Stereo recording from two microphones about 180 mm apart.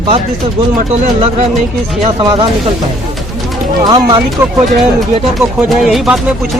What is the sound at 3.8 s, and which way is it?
Speech, 25° right (ahead or behind).